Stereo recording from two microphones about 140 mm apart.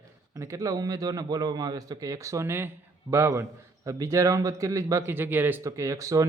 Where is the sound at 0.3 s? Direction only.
20° right (ahead or behind).